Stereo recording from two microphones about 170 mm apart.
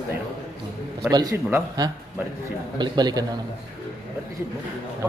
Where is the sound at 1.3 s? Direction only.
15° right (ahead or behind).